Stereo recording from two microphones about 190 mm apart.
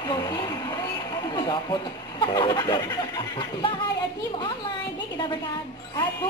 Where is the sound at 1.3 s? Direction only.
20° left (ahead or behind).